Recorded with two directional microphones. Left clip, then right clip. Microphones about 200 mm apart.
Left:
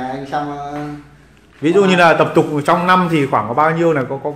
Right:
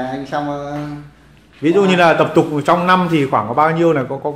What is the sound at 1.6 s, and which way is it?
A man's voice, centre (ahead or behind).